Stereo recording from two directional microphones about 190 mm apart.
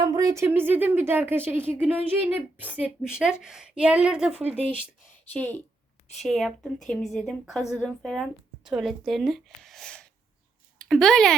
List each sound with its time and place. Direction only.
0.0 s a woman's voice: 20° right (ahead or behind)
4.4 s speech: 30° right (ahead or behind)
5.3 s a woman's voice: 10° left (ahead or behind)